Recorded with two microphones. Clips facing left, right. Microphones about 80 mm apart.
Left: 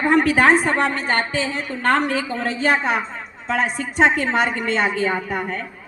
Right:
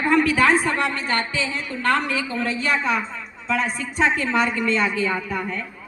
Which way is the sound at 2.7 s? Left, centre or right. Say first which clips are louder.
Left 4 dB; left.